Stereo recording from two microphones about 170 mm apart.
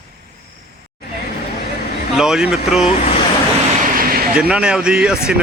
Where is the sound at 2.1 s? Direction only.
5° right (ahead or behind).